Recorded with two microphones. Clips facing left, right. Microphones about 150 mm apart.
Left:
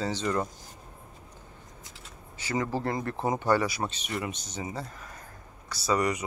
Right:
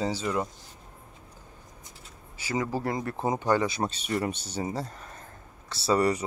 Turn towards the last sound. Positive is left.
turn(degrees=-30)  # may be behind; listen again after turning